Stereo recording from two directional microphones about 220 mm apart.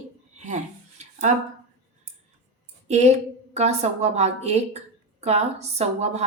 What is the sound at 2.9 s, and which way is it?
A woman's voice, 30° right (ahead or behind).